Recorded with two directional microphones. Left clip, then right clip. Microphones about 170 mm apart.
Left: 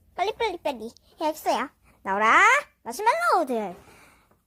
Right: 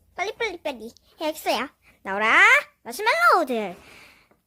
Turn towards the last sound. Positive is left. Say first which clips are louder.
# right 3 dB
turn(degrees=-10)  # may be behind; listen again after turning